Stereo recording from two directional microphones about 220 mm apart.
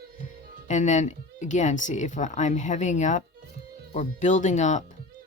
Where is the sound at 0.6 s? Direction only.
35° left (ahead or behind).